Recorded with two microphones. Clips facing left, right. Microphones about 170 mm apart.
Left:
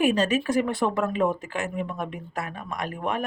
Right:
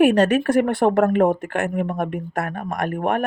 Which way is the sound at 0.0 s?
60° right (ahead or behind).